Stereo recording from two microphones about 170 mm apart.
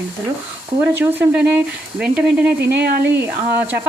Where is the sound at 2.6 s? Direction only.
80° right.